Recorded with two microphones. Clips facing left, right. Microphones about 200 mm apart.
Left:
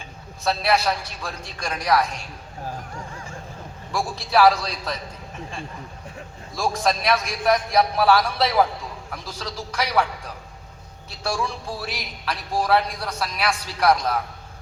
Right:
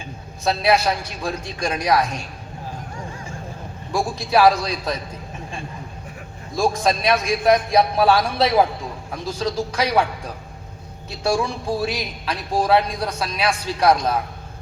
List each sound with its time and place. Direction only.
0.4 s speech: 20° right (ahead or behind)
3.9 s a man's voice: 20° right (ahead or behind)
6.6 s a man's voice: 20° right (ahead or behind)
11.2 s speech: 20° right (ahead or behind)